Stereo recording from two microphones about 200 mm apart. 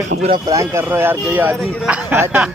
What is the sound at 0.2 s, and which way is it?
Speech, 30° right (ahead or behind).